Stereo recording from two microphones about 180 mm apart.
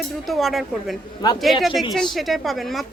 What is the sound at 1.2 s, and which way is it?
Speech, 20° left (ahead or behind).